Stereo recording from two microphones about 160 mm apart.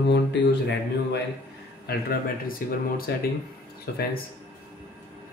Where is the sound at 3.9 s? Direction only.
80° left.